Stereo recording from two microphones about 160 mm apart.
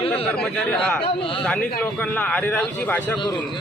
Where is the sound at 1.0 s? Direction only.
35° left (ahead or behind).